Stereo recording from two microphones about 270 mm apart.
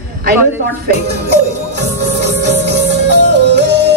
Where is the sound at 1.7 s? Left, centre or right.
Right.